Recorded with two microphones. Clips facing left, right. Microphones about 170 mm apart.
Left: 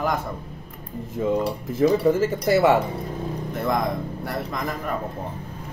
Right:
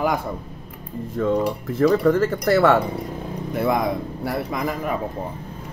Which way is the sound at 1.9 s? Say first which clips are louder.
Right 2 dB; 10° left (ahead or behind).